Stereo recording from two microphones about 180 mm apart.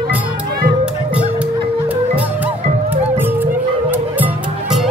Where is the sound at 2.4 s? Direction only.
10° right (ahead or behind).